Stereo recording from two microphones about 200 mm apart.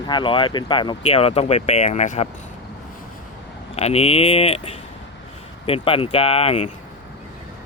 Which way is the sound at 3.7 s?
30° left (ahead or behind).